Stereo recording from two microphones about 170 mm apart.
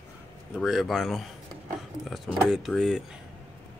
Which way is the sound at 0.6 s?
Centre (ahead or behind).